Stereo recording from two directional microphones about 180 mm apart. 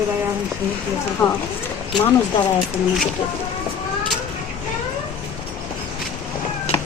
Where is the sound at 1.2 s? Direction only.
5° left (ahead or behind).